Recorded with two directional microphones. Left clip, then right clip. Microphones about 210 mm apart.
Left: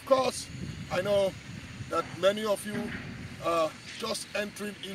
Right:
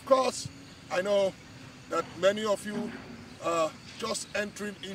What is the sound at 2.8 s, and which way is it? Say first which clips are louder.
Speech: left 1 dB; 35° right (ahead or behind).